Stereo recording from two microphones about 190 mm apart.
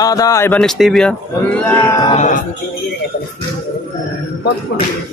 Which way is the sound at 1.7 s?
15° left (ahead or behind).